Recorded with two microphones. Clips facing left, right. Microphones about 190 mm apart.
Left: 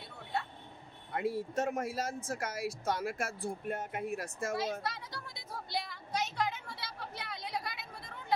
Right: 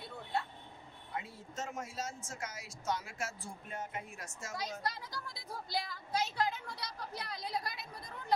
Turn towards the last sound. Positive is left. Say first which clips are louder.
# even
turn(degrees=0)  # may be behind; listen again after turning